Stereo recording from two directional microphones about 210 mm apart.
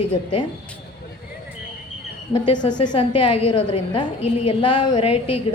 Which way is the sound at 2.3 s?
20° left (ahead or behind).